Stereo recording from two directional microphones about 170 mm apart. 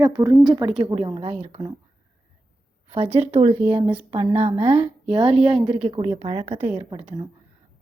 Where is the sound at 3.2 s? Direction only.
35° right (ahead or behind).